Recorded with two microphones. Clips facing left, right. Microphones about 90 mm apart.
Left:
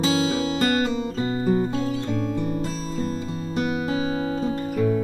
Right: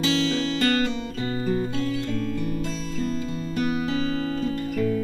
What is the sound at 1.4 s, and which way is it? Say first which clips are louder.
Music: left 3 dB; 25° left (ahead or behind).